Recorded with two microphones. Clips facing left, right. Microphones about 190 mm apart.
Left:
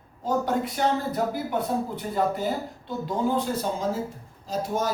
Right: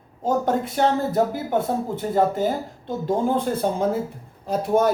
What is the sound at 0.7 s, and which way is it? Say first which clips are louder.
Speech: right 5 dB; 50° right (ahead or behind).